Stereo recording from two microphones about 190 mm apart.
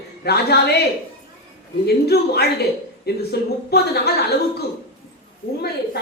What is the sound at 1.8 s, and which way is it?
A woman's voice, 55° left (ahead or behind).